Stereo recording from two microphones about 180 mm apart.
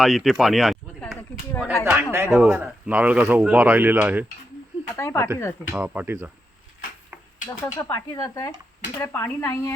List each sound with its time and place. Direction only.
0.0 s speech: centre (ahead or behind)
1.8 s speech: 15° right (ahead or behind)
4.9 s speech: 15° left (ahead or behind)
5.7 s speech: 10° right (ahead or behind)
7.6 s speech: 15° left (ahead or behind)